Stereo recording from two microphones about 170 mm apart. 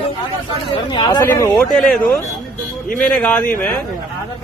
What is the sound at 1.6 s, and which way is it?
A man's voice, 5° left (ahead or behind).